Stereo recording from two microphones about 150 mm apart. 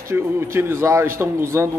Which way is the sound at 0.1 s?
15° right (ahead or behind).